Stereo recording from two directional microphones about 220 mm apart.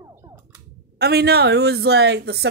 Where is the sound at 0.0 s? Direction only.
15° right (ahead or behind).